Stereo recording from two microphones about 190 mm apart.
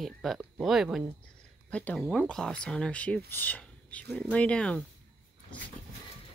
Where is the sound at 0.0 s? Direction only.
Centre (ahead or behind).